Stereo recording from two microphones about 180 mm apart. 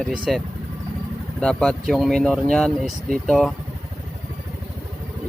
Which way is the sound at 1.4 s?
5° left (ahead or behind).